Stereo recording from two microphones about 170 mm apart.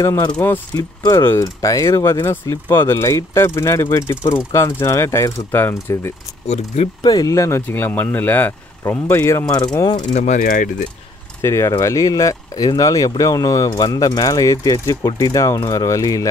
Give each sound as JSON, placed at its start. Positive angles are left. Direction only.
{"t": 0.0, "sound": "speech", "side_deg": 15}
{"t": 6.4, "sound": "speech", "side_deg": 40}
{"t": 7.0, "sound": "speech", "side_deg": 20}
{"t": 10.1, "sound": "mechanisms", "side_deg": 45}
{"t": 11.4, "sound": "speech", "side_deg": 15}